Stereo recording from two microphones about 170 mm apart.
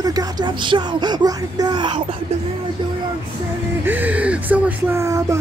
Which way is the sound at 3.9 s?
10° right (ahead or behind).